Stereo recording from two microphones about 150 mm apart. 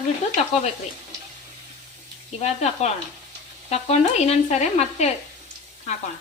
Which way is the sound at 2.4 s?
45° left (ahead or behind).